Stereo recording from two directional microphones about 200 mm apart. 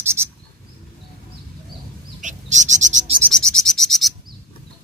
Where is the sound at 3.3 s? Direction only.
5° left (ahead or behind).